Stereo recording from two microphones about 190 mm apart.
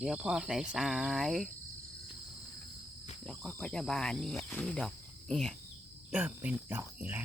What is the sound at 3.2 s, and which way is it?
Speech, 5° left (ahead or behind).